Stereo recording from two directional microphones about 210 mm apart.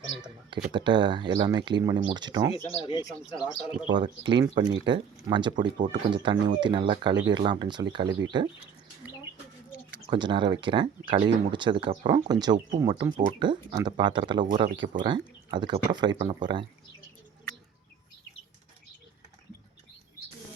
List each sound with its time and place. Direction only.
0.5 s speech: 20° right (ahead or behind)
2.6 s speech: 25° left (ahead or behind)
4.3 s speech: 20° right (ahead or behind)
10.1 s speech: 20° right (ahead or behind)